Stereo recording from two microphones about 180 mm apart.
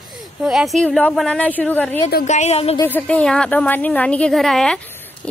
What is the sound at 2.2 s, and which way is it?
Speech, 40° left (ahead or behind).